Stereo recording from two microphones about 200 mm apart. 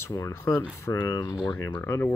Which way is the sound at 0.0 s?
15° left (ahead or behind).